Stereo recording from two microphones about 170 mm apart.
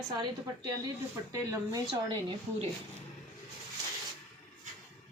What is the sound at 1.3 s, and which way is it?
Speech, 20° right (ahead or behind).